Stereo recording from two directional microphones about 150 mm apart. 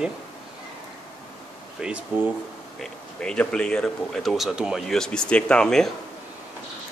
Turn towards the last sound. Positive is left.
turn(degrees=5)  # may be behind; listen again after turning